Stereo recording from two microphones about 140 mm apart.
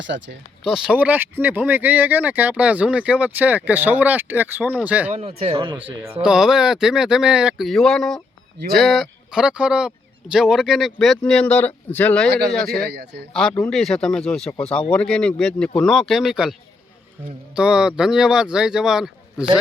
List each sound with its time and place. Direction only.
0.6 s speech: 5° right (ahead or behind)
5.4 s speech: 40° right (ahead or behind)
5.7 s speech: 15° right (ahead or behind)
6.2 s speech: 5° right (ahead or behind)